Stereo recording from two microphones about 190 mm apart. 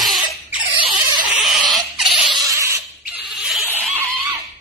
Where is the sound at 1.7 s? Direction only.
Centre (ahead or behind).